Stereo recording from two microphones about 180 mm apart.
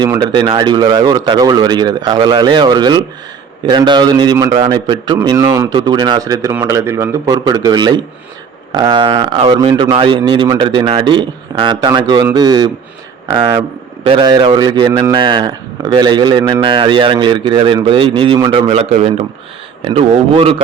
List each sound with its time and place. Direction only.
0.0 s a man's voice: 25° right (ahead or behind)
14.1 s a man's voice: 25° right (ahead or behind)